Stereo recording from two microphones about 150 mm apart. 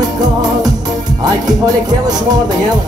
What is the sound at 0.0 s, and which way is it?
Music, 25° right (ahead or behind).